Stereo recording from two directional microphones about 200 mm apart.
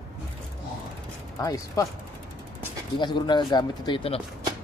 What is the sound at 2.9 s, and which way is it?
Speech, 20° left (ahead or behind).